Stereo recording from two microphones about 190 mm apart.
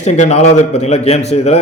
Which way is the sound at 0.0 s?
35° left (ahead or behind).